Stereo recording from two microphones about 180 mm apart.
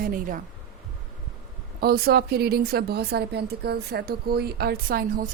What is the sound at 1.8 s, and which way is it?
Speech, 60° right (ahead or behind).